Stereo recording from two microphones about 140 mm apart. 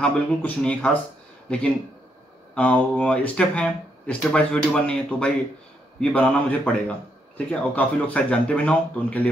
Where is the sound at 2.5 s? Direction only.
10° left (ahead or behind).